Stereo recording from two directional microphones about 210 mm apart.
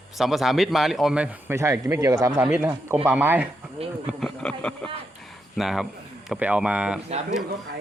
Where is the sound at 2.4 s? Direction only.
5° right (ahead or behind).